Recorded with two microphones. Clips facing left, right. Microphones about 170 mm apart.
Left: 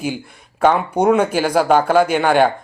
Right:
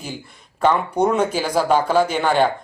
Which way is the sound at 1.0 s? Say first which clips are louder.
Left 6 dB; 60° left (ahead or behind).